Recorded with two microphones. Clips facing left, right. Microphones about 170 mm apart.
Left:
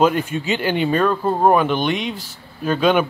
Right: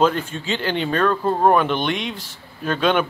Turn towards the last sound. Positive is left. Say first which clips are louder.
# left 3 dB
turn(degrees=5)  # may be behind; listen again after turning